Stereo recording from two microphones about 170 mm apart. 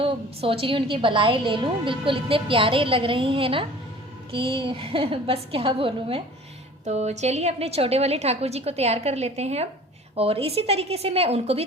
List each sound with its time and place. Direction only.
0.0 s a woman's voice: 35° right (ahead or behind)